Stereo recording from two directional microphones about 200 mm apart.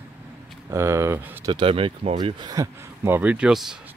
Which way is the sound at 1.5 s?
25° right (ahead or behind).